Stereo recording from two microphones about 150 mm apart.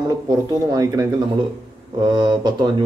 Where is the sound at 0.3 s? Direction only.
25° right (ahead or behind).